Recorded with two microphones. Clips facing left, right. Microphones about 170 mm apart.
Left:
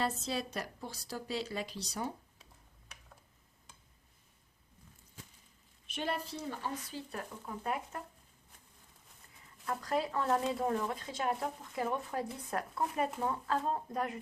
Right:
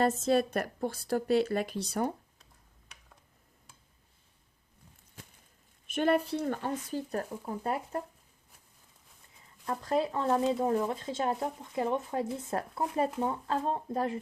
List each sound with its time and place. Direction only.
0.0 s a woman's voice: 50° right (ahead or behind)
5.9 s speech: 55° right (ahead or behind); by 8.0 s 35° right (ahead or behind)
9.6 s speech: 25° right (ahead or behind)